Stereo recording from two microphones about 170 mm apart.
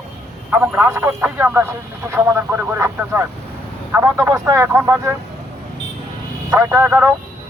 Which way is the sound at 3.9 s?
15° right (ahead or behind).